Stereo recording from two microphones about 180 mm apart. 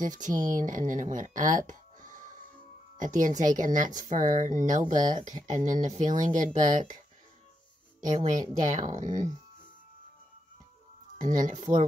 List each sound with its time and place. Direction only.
0.5 s speech: 45° right (ahead or behind)
8.1 s speech: 45° right (ahead or behind)
11.2 s speech: 45° right (ahead or behind)